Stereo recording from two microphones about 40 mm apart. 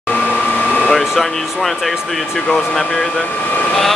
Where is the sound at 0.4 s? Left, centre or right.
Left.